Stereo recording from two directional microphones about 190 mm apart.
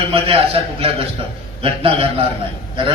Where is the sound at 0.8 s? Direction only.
30° right (ahead or behind).